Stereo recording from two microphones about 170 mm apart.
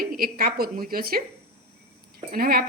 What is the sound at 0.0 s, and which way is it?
A woman's voice, 60° right (ahead or behind).